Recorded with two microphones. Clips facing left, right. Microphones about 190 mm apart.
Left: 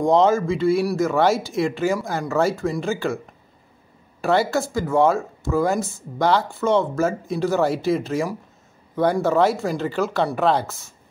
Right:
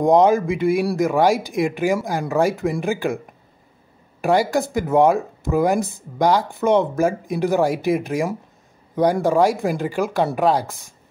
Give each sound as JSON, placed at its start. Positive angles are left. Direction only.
{"t": 0.0, "sound": "speech", "side_deg": -15}
{"t": 4.2, "sound": "speech", "side_deg": -15}